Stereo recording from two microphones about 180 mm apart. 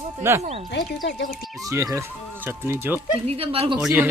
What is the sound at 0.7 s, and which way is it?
Speech, 65° left (ahead or behind).